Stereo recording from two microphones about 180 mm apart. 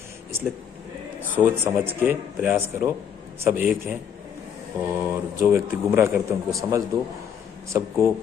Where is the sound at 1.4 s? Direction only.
15° right (ahead or behind).